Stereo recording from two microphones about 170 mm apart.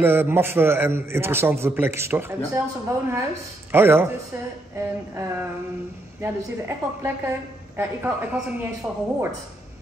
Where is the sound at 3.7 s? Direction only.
10° right (ahead or behind).